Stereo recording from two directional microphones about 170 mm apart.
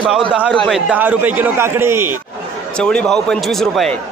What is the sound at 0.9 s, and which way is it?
Speech, 10° right (ahead or behind).